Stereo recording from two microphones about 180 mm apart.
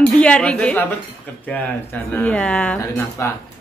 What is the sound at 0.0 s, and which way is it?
Speech, 5° left (ahead or behind).